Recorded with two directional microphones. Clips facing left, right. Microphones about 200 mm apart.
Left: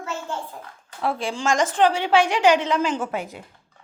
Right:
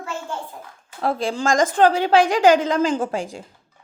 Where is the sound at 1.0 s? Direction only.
35° right (ahead or behind).